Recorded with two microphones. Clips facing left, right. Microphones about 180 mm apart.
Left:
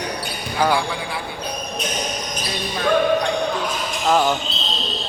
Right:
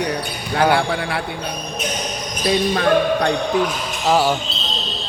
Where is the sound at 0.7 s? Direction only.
65° right (ahead or behind).